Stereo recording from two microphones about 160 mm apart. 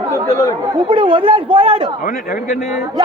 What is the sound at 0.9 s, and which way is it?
Speech, 30° right (ahead or behind).